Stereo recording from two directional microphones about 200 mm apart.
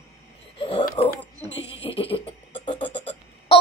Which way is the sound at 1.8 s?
25° left (ahead or behind).